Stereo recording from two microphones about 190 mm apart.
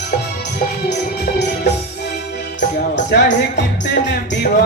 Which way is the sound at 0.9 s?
65° left (ahead or behind).